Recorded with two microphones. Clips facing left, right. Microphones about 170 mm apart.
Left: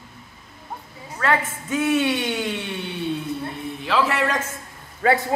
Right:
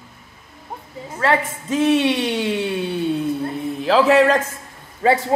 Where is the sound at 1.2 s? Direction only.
30° right (ahead or behind).